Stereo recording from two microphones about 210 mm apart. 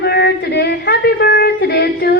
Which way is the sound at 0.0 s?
50° left (ahead or behind).